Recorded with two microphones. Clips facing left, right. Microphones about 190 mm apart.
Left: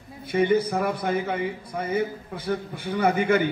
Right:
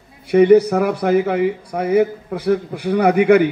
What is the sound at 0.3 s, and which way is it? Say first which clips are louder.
Speech: right 10 dB; 75° right (ahead or behind).